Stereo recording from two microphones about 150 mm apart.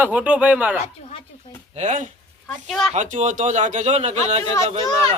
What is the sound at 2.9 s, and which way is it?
A man's voice, 55° right (ahead or behind).